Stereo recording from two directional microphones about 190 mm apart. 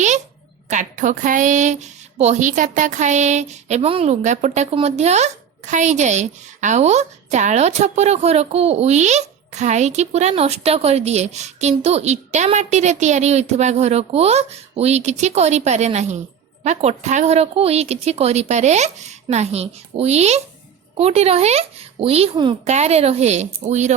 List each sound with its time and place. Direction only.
0.7 s speech: 40° right (ahead or behind)